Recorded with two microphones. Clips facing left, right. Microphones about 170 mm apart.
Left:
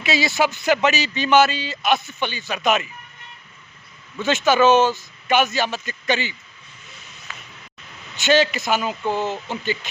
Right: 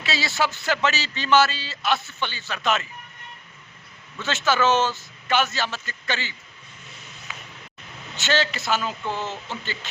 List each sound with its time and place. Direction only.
0.0 s speech: 15° left (ahead or behind)
4.2 s speech: 15° left (ahead or behind)
7.3 s a sound: 15° right (ahead or behind)
8.1 s speech: 15° left (ahead or behind)